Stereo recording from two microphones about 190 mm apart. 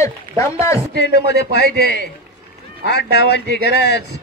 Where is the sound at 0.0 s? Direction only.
15° left (ahead or behind).